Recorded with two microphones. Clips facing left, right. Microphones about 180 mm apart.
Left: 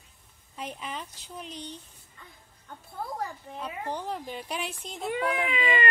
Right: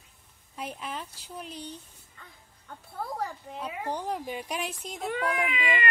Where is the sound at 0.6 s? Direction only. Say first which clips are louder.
Even; 5° right (ahead or behind).